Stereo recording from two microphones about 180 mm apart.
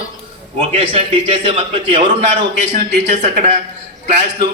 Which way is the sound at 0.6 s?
35° right (ahead or behind).